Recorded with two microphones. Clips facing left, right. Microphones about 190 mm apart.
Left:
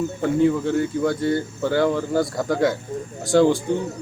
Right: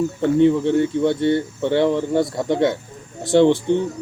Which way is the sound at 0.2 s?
30° right (ahead or behind).